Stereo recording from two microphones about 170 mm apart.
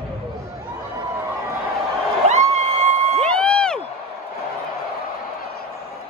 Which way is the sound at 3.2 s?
5° left (ahead or behind).